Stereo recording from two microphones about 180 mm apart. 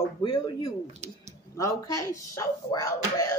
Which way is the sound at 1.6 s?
15° left (ahead or behind).